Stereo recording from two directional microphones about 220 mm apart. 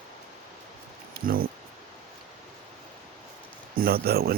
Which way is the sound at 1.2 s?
40° right (ahead or behind).